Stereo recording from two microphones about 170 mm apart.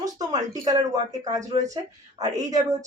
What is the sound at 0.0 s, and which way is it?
Speech, 20° right (ahead or behind).